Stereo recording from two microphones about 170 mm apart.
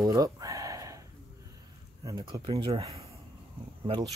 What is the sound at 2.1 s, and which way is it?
Speech, 25° right (ahead or behind).